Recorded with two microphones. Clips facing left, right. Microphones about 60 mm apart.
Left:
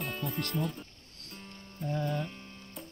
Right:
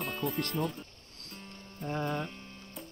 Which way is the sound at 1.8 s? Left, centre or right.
Right.